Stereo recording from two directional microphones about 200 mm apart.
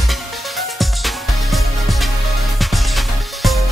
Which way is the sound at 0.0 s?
Centre (ahead or behind).